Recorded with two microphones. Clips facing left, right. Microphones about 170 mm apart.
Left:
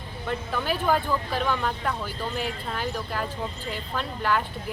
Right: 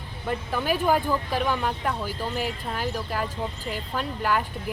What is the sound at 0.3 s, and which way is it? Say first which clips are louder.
Speech: right 2 dB; 10° right (ahead or behind).